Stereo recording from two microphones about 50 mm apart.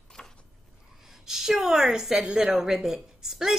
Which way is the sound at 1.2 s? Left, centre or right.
Centre.